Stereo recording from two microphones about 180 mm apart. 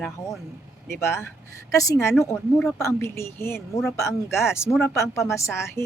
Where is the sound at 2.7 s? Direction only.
15° left (ahead or behind).